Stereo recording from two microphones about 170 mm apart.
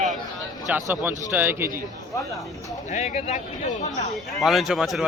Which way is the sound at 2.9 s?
40° left (ahead or behind).